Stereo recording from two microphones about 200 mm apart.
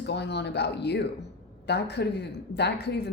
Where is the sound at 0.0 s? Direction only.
60° left (ahead or behind).